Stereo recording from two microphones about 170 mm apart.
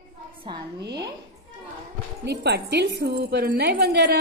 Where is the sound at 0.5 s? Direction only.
25° right (ahead or behind).